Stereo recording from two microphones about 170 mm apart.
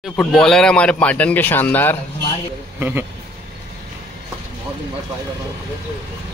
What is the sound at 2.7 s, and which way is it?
Speech, 10° right (ahead or behind).